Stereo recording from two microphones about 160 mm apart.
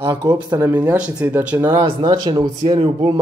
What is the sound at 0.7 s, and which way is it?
Speech, 10° right (ahead or behind).